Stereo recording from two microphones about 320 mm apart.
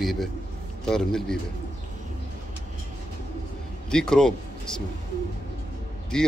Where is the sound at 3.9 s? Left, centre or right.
Centre.